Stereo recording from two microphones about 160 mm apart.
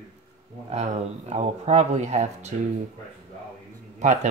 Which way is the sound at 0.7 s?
45° right (ahead or behind).